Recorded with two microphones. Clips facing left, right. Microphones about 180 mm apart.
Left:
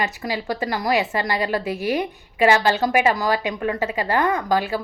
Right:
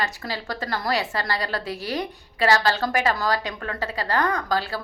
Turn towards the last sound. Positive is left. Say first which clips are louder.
# left 4 dB
turn(degrees=15)  # may be behind; listen again after turning